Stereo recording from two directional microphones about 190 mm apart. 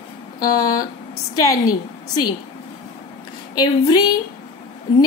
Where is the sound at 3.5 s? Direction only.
20° left (ahead or behind).